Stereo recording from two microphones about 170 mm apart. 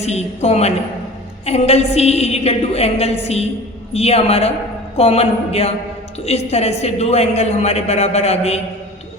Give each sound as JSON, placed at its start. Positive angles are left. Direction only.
{"t": 0.0, "sound": "a woman's voice", "side_deg": 40}